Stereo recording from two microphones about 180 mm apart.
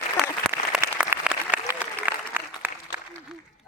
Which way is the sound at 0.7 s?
10° right (ahead or behind).